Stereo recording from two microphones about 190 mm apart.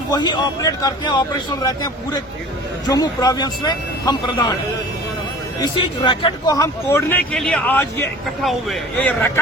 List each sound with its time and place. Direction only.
0.1 s a man's voice: 25° left (ahead or behind)
5.5 s speech: 25° left (ahead or behind)
8.4 s speech: centre (ahead or behind)